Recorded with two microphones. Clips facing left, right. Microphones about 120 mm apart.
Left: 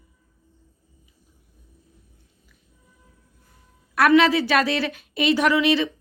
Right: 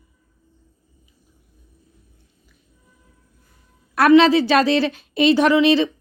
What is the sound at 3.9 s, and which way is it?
A woman's voice, 30° right (ahead or behind).